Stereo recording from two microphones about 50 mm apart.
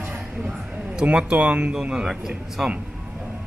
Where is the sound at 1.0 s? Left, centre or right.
Right.